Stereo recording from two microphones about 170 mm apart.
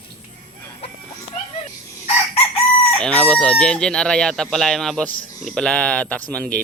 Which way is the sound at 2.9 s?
5° left (ahead or behind).